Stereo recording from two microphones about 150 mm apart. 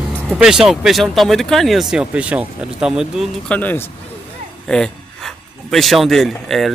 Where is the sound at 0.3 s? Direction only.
5° right (ahead or behind).